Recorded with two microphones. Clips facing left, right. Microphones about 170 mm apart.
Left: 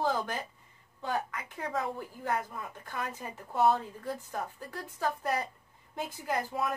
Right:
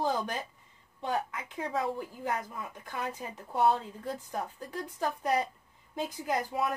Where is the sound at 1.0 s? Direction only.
20° right (ahead or behind).